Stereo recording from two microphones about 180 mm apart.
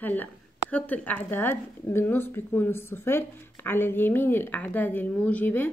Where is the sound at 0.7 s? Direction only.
10° left (ahead or behind).